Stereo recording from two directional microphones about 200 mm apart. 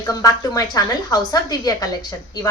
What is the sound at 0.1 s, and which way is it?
A woman's voice, 20° left (ahead or behind).